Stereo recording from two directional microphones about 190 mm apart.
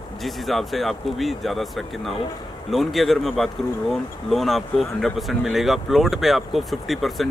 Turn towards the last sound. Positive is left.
turn(degrees=0)  # may be behind; listen again after turning